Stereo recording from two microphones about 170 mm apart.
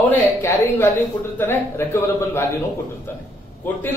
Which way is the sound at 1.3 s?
15° left (ahead or behind).